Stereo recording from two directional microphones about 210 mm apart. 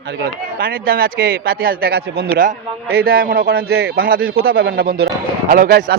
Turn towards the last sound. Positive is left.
turn(degrees=-45)  # may be behind; listen again after turning